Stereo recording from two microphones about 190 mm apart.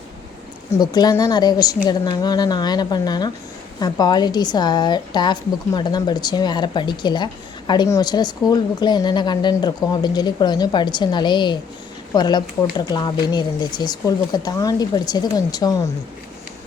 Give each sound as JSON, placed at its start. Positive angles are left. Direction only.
{"t": 0.7, "sound": "a woman's voice", "side_deg": 20}